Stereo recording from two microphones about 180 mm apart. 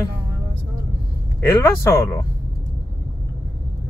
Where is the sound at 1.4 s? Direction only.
15° left (ahead or behind).